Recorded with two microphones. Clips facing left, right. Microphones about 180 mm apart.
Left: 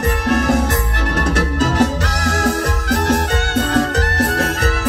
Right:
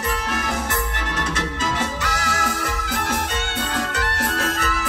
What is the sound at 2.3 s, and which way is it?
Music, 45° left (ahead or behind).